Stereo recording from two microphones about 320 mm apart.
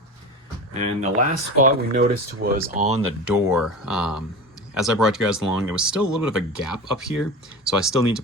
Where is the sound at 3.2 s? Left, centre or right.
Centre.